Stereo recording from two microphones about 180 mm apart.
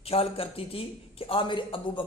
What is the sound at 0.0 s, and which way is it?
A man's voice, 35° left (ahead or behind).